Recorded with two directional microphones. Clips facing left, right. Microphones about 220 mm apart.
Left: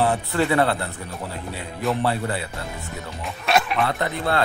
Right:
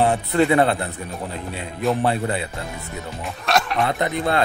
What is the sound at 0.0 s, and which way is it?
Speech, 20° right (ahead or behind).